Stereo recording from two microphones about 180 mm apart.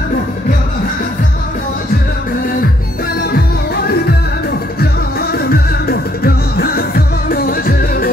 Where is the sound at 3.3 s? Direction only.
60° left (ahead or behind).